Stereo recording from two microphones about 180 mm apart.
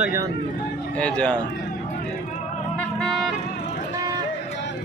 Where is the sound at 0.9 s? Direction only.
5° left (ahead or behind).